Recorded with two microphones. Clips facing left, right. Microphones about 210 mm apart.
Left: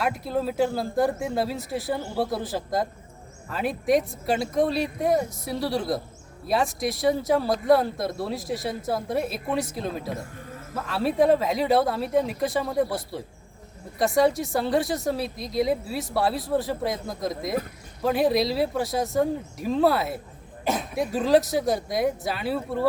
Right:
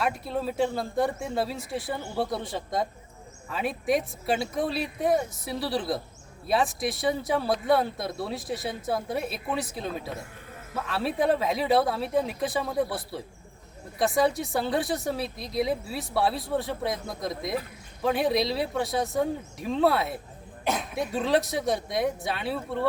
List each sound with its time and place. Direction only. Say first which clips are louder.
0.0 s speech: left 3 dB; centre (ahead or behind)